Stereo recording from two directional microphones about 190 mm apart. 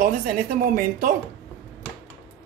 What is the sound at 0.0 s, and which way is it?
Speech, 45° right (ahead or behind).